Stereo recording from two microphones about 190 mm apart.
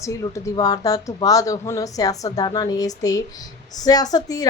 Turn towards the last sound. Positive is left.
turn(degrees=20)  # may be behind; listen again after turning